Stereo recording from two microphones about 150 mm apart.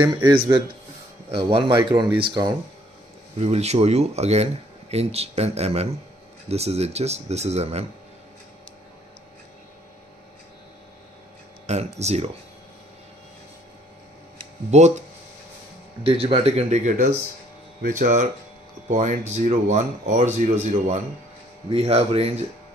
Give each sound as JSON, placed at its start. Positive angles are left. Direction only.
{"t": 0.0, "sound": "speech", "side_deg": -30}
{"t": 3.3, "sound": "speech", "side_deg": -45}
{"t": 11.6, "sound": "speech", "side_deg": -45}
{"t": 14.7, "sound": "speech", "side_deg": -50}
{"t": 16.0, "sound": "speech", "side_deg": -40}
{"t": 21.6, "sound": "speech", "side_deg": -40}